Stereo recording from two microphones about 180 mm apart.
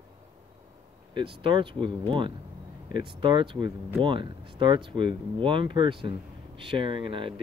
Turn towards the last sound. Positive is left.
turn(degrees=-30)  # may be behind; listen again after turning